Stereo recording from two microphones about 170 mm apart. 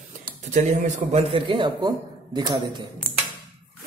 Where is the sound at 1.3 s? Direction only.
30° right (ahead or behind).